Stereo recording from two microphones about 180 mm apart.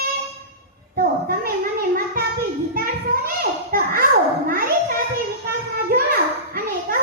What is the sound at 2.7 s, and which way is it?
Children playing, 55° right (ahead or behind).